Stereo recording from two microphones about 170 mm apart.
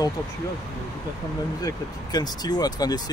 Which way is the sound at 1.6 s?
25° left (ahead or behind).